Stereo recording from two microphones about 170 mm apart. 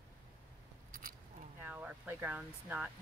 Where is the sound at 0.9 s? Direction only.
55° right (ahead or behind).